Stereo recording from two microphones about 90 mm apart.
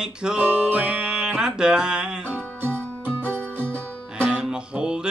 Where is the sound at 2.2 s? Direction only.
20° right (ahead or behind).